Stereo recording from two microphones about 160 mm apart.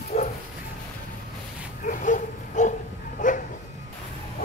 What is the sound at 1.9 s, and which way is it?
Dog, 55° left (ahead or behind).